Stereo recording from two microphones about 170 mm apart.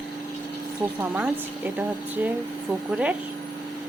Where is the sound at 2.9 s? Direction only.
10° right (ahead or behind).